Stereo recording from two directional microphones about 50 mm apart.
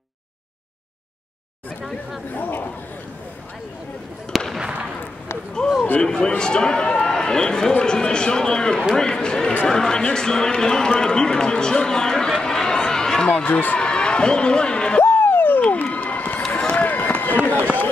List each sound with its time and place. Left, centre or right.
2.3 s speech: left
4.3 s fireworks: centre
5.9 s a man's voice: centre
13.3 s speech: left
13.7 s speech: centre
15.0 s a sound: left
15.8 s crowd: left
16.5 s run: left